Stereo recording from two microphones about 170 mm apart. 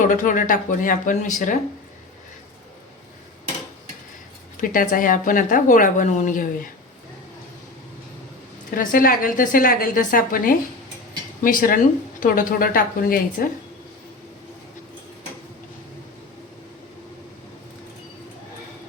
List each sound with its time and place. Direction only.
0.0 s a woman's voice: 50° left (ahead or behind)
4.5 s a woman's voice: 55° left (ahead or behind)
8.7 s a woman's voice: 55° left (ahead or behind)